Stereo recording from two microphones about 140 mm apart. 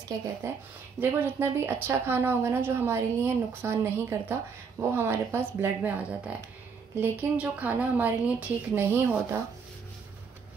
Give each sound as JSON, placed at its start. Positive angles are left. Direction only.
{"t": 0.4, "sound": "speech", "side_deg": -20}